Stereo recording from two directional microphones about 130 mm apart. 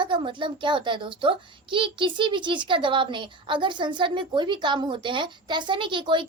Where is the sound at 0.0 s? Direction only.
40° right (ahead or behind).